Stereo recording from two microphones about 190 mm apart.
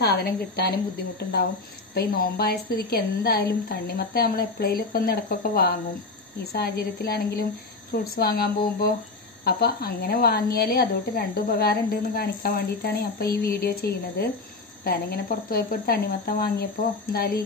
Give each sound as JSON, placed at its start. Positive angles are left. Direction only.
{"t": 0.0, "sound": "a woman's voice", "side_deg": 55}
{"t": 2.0, "sound": "a woman's voice", "side_deg": 55}